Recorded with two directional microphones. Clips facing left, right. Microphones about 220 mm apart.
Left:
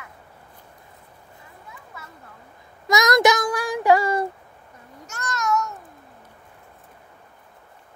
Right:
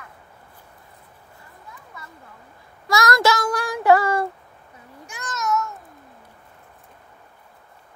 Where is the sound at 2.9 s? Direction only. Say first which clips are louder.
Left 2 dB; 20° left (ahead or behind).